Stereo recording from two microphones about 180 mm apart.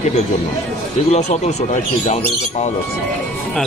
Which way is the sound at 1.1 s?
40° left (ahead or behind).